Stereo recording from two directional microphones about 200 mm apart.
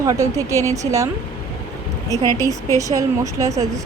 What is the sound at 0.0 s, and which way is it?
A woman's voice, 15° right (ahead or behind).